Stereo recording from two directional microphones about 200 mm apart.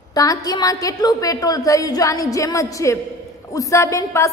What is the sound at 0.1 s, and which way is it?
A woman's voice, 20° left (ahead or behind).